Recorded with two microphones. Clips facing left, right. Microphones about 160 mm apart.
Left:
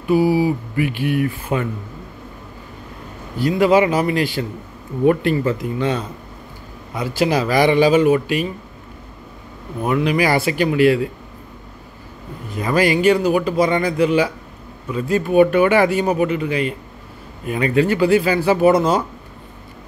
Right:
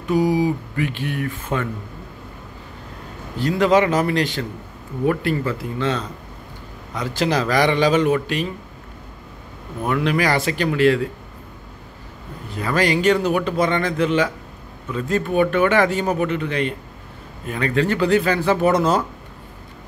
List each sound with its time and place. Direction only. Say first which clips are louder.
0.1 s a man's voice: left 3 dB; 10° left (ahead or behind)
3.3 s a man's voice: left 2 dB; 10° left (ahead or behind)
5.0 s a man's voice: left 5 dB; 20° left (ahead or behind)
9.8 s a man's voice: left 2 dB; 10° left (ahead or behind)
12.6 s a man's voice: left 3 dB; 10° left (ahead or behind)